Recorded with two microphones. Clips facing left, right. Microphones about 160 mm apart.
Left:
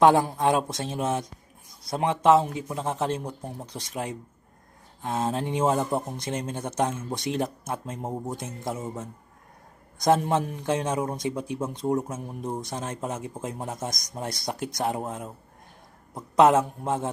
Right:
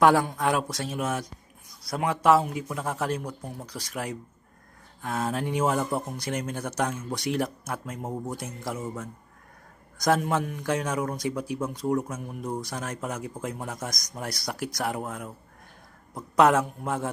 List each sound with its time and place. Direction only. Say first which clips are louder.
0.0 s speech: left 2 dB; 25° left (ahead or behind)